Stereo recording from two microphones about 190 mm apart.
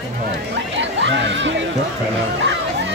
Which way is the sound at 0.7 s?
70° right (ahead or behind).